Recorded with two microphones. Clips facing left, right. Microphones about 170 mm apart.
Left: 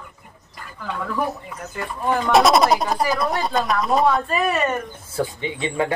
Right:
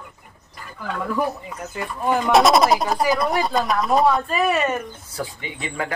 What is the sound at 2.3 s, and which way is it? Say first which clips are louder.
Speech: even; centre (ahead or behind).